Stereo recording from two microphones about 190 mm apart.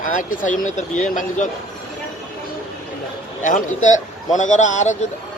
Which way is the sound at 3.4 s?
40° left (ahead or behind).